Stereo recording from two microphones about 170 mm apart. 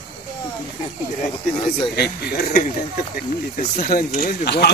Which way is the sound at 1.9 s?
65° left (ahead or behind).